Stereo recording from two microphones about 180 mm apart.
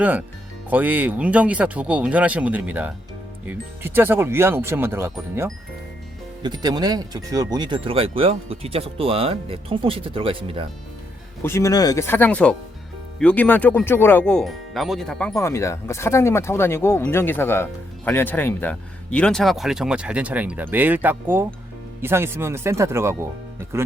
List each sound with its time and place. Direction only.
0.0 s speech: 10° right (ahead or behind); by 10.7 s 30° right (ahead or behind)
11.4 s speech: 15° left (ahead or behind)
15.4 s speech: 15° left (ahead or behind); by 23.9 s 15° right (ahead or behind)